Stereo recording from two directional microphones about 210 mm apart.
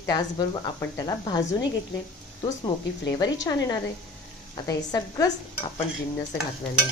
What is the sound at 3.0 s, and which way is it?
A woman's voice, 15° left (ahead or behind).